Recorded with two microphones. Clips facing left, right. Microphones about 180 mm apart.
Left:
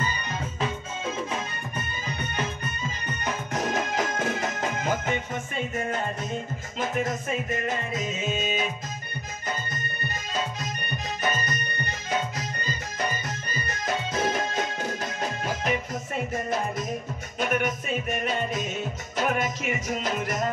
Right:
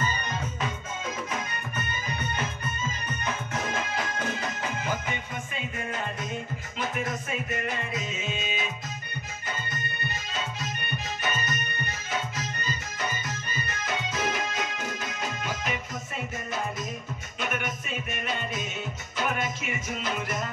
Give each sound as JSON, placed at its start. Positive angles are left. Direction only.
{"t": 0.6, "sound": "music", "side_deg": 30}
{"t": 3.5, "sound": "music", "side_deg": 40}
{"t": 17.4, "sound": "music", "side_deg": 40}